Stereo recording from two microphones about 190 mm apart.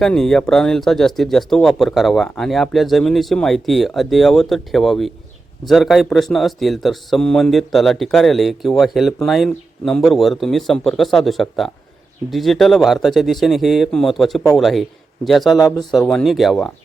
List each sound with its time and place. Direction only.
0.0 s speech: centre (ahead or behind)